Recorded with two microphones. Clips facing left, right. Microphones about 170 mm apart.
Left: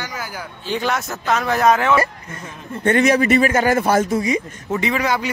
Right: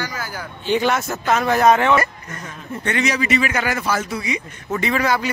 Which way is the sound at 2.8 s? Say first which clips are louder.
Left 7 dB; 50° left (ahead or behind).